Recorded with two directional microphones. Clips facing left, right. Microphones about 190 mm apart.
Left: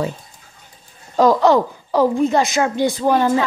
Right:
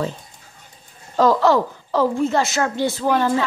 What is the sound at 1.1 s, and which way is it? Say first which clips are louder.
A woman's voice: left 2 dB; 15° left (ahead or behind).